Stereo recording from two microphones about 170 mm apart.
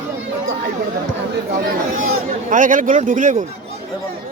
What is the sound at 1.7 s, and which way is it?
Chatter, 55° right (ahead or behind).